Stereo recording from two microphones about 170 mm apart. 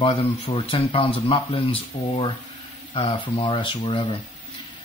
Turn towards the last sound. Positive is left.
turn(degrees=30)  # may be behind; listen again after turning